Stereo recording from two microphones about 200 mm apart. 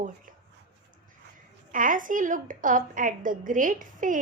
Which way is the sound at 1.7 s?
40° right (ahead or behind).